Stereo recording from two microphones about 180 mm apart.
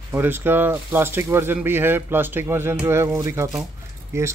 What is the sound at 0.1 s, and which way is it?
Speech, 10° right (ahead or behind).